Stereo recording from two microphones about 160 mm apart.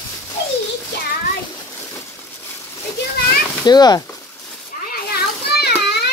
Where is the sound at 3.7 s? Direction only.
25° left (ahead or behind).